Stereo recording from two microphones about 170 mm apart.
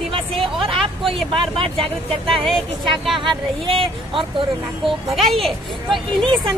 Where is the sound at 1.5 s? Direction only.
30° right (ahead or behind).